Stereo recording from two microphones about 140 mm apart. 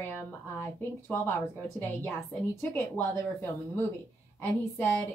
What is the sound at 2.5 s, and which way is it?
Speech, 15° left (ahead or behind).